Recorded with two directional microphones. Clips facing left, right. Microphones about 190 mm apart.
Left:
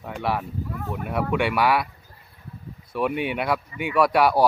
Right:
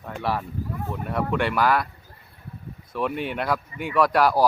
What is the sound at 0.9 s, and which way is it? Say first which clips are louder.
Speech: left 1 dB; 10° left (ahead or behind).